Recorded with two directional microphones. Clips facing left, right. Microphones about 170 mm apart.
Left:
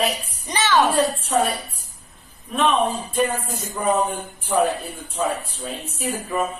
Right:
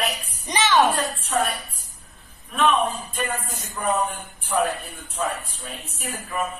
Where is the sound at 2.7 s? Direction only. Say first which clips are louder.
Left 3 dB; 30° left (ahead or behind).